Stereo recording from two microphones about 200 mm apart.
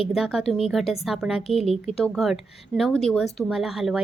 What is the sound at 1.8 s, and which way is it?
A woman's voice, centre (ahead or behind).